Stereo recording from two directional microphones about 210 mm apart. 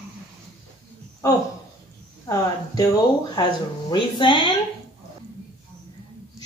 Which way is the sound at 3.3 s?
20° left (ahead or behind).